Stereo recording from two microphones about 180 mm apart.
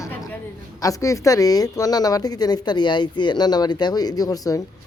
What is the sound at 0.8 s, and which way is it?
A woman's voice, 20° left (ahead or behind).